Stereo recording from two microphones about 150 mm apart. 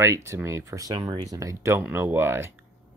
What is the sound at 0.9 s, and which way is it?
Speech, 30° right (ahead or behind).